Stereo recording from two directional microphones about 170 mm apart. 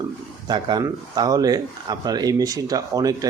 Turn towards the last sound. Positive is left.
turn(degrees=-20)  # may be behind; listen again after turning